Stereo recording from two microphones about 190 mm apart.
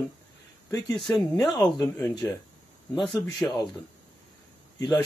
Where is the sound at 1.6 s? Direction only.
20° left (ahead or behind).